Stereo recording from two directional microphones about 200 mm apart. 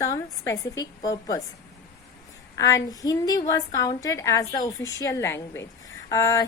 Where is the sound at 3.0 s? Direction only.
20° left (ahead or behind).